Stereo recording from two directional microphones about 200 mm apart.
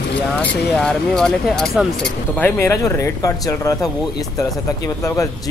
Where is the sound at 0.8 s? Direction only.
5° left (ahead or behind).